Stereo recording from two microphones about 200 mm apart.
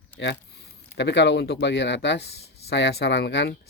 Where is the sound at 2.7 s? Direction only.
60° left (ahead or behind).